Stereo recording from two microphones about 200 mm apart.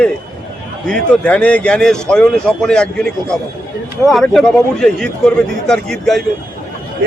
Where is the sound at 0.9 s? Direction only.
5° left (ahead or behind).